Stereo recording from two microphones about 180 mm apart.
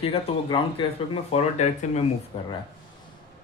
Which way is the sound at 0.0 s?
30° left (ahead or behind).